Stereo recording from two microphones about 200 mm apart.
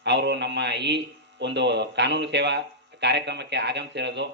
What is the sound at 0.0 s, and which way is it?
A man's voice, 60° right (ahead or behind).